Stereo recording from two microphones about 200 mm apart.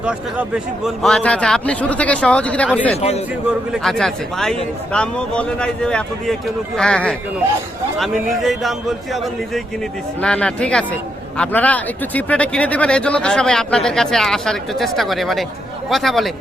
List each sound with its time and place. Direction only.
0.0 s speech: 5° right (ahead or behind)
3.0 s a man's voice: 30° left (ahead or behind)
3.7 s speech: centre (ahead or behind)
10.2 s speech: 5° left (ahead or behind)